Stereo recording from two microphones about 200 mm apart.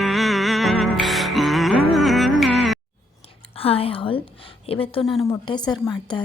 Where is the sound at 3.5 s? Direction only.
30° left (ahead or behind).